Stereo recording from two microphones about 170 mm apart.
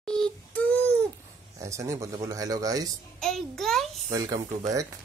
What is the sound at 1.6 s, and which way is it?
Speech, 20° right (ahead or behind).